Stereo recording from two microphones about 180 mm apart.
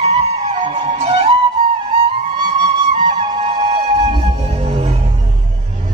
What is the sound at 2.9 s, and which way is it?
Music, 25° right (ahead or behind).